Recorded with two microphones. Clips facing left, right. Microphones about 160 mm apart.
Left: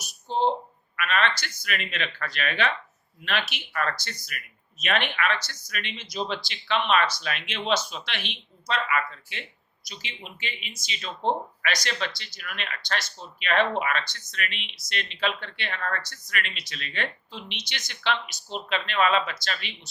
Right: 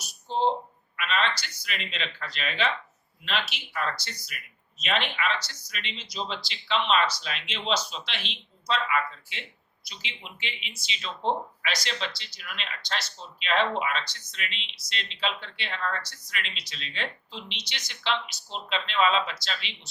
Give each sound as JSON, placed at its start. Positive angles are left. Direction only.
{"t": 0.9, "sound": "speech", "side_deg": 55}